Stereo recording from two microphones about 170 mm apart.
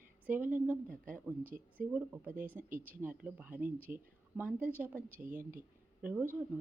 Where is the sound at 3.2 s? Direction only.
10° right (ahead or behind).